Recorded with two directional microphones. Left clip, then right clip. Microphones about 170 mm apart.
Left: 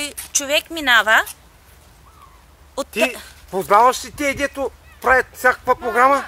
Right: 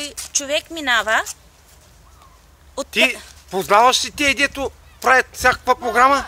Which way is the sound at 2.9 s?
10° right (ahead or behind).